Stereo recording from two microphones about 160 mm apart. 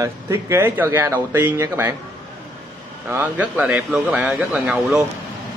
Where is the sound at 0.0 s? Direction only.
15° right (ahead or behind).